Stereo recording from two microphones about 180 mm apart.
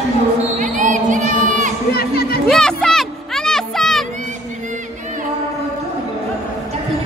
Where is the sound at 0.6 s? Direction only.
45° right (ahead or behind).